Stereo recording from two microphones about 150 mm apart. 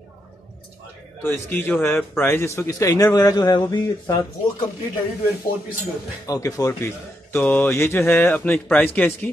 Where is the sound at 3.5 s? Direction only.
25° left (ahead or behind).